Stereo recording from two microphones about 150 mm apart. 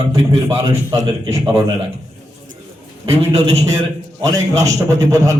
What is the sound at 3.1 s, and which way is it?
Speech, 40° right (ahead or behind).